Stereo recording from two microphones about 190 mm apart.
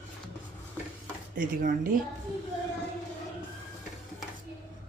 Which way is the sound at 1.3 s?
45° right (ahead or behind).